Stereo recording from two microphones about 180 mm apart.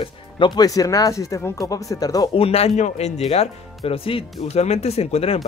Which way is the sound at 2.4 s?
35° left (ahead or behind).